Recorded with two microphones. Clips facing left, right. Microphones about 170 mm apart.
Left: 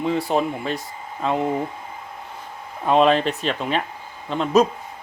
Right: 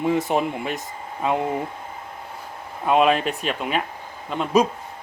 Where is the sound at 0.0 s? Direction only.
15° right (ahead or behind).